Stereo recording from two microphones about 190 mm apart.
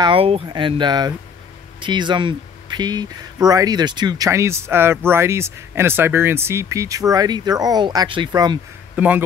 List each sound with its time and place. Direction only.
0.0 s speech: 30° right (ahead or behind)
8.9 s speech: 5° right (ahead or behind)